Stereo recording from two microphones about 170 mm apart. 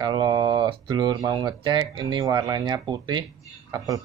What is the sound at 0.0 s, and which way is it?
Speech, 25° right (ahead or behind).